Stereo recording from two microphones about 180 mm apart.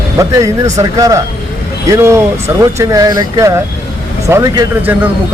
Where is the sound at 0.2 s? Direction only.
15° right (ahead or behind).